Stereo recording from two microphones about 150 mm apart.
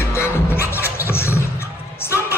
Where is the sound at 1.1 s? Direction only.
15° left (ahead or behind).